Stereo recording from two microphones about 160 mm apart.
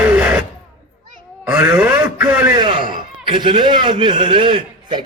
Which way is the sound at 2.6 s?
30° right (ahead or behind).